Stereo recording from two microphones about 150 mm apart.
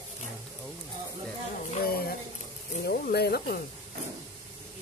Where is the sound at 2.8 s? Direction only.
90° left.